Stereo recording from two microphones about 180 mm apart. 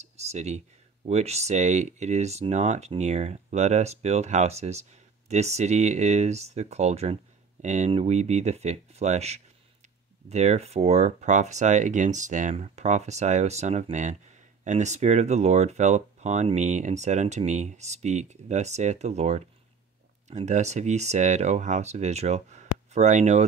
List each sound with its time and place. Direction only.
0.0 s speech: 40° right (ahead or behind)